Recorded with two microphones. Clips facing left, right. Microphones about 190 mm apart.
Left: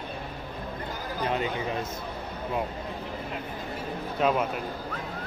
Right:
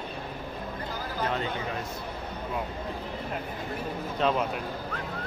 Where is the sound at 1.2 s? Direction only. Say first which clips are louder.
Left 2 dB; 15° left (ahead or behind).